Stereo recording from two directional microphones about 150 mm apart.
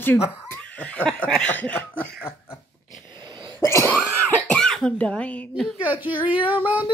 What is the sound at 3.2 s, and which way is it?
Sneeze, 30° right (ahead or behind).